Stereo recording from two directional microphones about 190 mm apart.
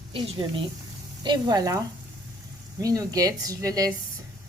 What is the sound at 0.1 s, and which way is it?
Speech, 25° right (ahead or behind).